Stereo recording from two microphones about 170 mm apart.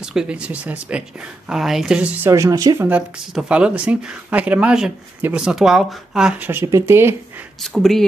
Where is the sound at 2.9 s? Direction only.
5° right (ahead or behind).